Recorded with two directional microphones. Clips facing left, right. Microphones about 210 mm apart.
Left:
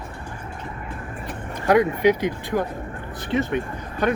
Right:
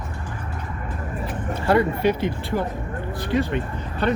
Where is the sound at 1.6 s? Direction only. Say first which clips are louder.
Left 2 dB; 15° left (ahead or behind).